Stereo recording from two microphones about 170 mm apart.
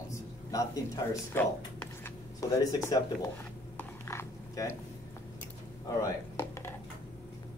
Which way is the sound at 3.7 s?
15° left (ahead or behind).